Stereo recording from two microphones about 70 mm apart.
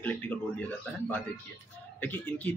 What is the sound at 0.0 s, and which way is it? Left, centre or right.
Speech, left.